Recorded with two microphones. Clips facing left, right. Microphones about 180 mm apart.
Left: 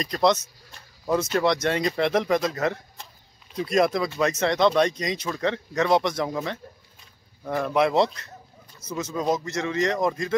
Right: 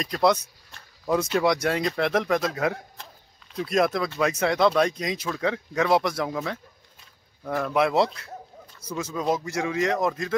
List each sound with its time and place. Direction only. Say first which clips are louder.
0.0 s speech: even; 5° right (ahead or behind)